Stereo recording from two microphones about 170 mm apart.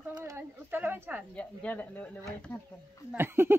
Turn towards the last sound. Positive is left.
turn(degrees=-15)  # may be behind; listen again after turning